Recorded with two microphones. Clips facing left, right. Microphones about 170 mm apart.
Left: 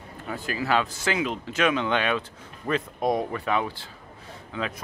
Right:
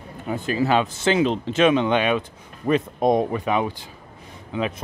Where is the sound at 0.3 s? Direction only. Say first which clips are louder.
Right 5 dB; 20° right (ahead or behind).